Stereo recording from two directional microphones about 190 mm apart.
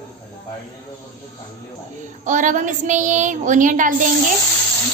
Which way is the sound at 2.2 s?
40° right (ahead or behind).